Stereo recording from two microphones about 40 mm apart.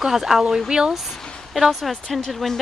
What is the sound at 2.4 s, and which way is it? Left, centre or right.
Speech, centre.